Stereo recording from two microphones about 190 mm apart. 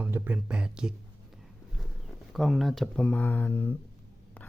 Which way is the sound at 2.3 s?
Centre (ahead or behind).